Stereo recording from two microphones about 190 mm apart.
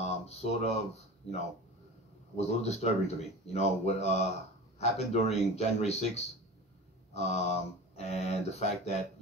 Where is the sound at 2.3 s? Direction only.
35° left (ahead or behind).